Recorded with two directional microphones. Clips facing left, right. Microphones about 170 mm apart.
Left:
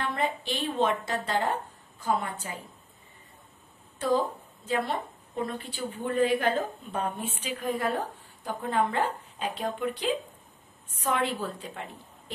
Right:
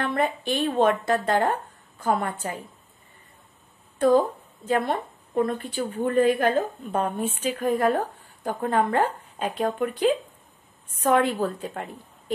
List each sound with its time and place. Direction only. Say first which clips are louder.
0.0 s a woman's voice: right 5 dB; 55° right (ahead or behind)
4.6 s a woman's voice: right 5 dB; 50° right (ahead or behind)